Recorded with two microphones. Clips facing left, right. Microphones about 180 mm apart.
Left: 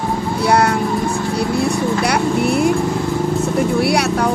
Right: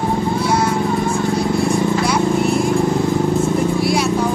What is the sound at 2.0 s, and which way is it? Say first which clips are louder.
Vehicle: even; 65° left (ahead or behind).